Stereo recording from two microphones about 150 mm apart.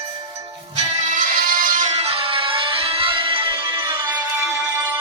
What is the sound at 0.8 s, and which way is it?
Music, 50° right (ahead or behind).